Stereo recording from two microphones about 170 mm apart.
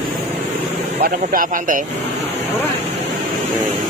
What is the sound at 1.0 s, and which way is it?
Speech, 55° right (ahead or behind).